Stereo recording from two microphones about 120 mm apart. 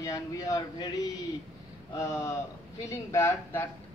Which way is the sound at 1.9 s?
25° left (ahead or behind).